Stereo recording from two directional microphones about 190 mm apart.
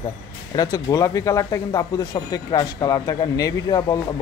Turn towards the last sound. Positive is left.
turn(degrees=20)  # may be behind; listen again after turning